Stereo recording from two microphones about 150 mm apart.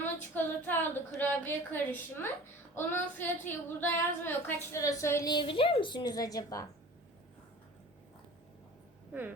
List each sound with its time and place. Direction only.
0.3 s a woman's voice: 15° left (ahead or behind)